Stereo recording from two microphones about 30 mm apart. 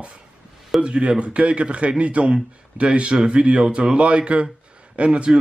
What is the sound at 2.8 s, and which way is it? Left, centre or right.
A man's voice, right.